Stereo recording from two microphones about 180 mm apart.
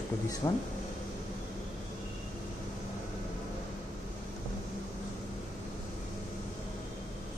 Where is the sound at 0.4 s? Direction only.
25° left (ahead or behind).